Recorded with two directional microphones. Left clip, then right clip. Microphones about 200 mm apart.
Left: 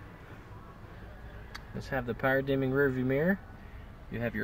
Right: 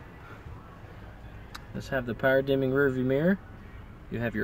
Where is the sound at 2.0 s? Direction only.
20° right (ahead or behind).